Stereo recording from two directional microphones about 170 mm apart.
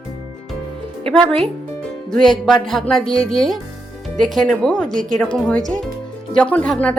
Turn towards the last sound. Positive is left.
turn(degrees=5)  # may be behind; listen again after turning